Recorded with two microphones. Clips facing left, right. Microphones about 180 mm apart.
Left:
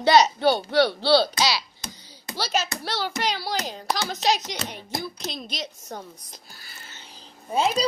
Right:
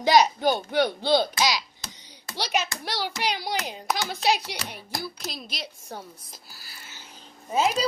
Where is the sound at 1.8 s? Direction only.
20° left (ahead or behind).